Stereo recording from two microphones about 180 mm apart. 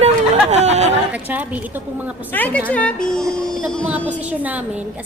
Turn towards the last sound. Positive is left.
turn(degrees=-10)  # may be behind; listen again after turning